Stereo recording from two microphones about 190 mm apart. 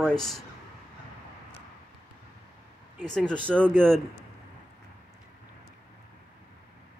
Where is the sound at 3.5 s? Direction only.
Centre (ahead or behind).